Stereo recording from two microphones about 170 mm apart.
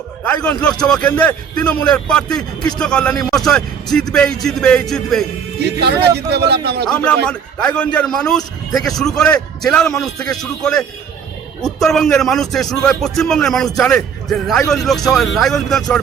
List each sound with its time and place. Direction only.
0.6 s a man's voice: 5° left (ahead or behind)
5.5 s speech: 75° right (ahead or behind)
6.8 s a man's voice: 5° left (ahead or behind)